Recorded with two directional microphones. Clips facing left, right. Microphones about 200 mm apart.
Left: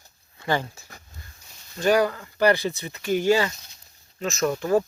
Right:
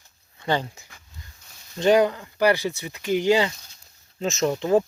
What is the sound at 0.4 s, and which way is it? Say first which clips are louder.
Speech: right 1 dB; 20° right (ahead or behind).